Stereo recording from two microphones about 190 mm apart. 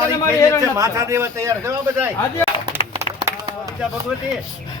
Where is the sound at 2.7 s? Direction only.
15° right (ahead or behind).